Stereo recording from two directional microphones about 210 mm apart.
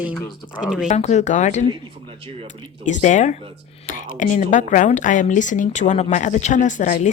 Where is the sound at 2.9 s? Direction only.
35° left (ahead or behind).